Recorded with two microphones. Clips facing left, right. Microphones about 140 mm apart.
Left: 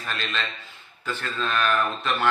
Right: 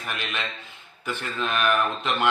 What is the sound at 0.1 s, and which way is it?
Speech, 15° right (ahead or behind).